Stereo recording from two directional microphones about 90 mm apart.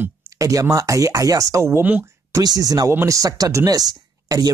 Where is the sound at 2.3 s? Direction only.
45° right (ahead or behind).